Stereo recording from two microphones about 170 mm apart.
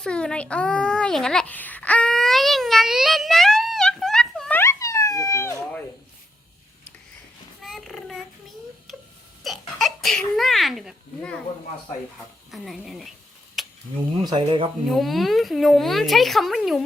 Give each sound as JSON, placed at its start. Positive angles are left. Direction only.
{"t": 0.0, "sound": "a child's voice", "side_deg": 5}
{"t": 7.6, "sound": "a sound", "side_deg": 0}
{"t": 9.4, "sound": "speech", "side_deg": 0}
{"t": 12.5, "sound": "a woman's voice", "side_deg": 0}
{"t": 13.6, "sound": "a sound", "side_deg": 0}
{"t": 14.3, "sound": "speech", "side_deg": -25}
{"t": 14.8, "sound": "a woman's voice", "side_deg": 0}